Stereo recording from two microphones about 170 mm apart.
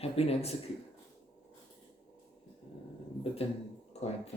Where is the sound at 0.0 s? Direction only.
35° left (ahead or behind).